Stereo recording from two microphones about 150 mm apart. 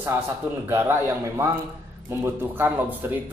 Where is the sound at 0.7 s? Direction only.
15° right (ahead or behind).